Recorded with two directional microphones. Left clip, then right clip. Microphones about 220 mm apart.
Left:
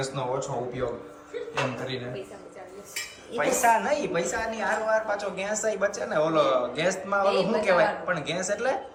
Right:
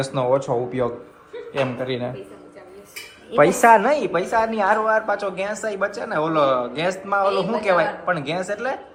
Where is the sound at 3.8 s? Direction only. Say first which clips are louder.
Right 6 dB; 10° right (ahead or behind).